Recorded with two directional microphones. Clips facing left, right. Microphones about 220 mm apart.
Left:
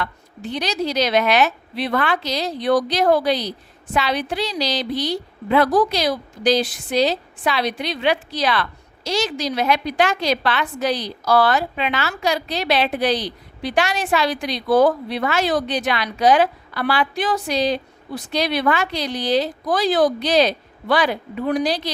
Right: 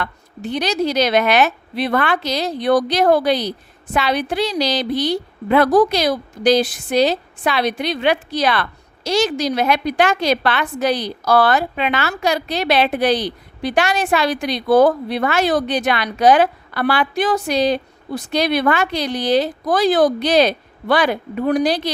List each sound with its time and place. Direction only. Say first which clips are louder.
0.0 s a woman's voice: right 2 dB; 50° right (ahead or behind)